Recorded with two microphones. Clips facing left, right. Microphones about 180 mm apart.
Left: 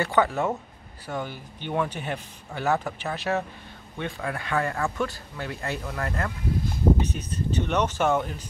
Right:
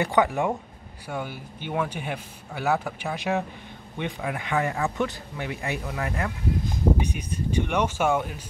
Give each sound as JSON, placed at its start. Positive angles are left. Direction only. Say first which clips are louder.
{"t": 0.0, "sound": "speech", "louder": "right 1 dB", "side_deg": -15}